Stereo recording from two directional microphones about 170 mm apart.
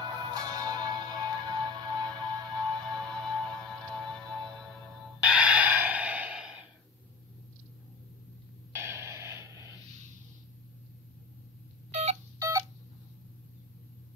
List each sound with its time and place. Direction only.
0.3 s music: 20° right (ahead or behind)
5.2 s gasp: 5° right (ahead or behind)
8.7 s music: 15° right (ahead or behind)
11.9 s a sound: 40° right (ahead or behind)
12.4 s tick-tock: 20° right (ahead or behind)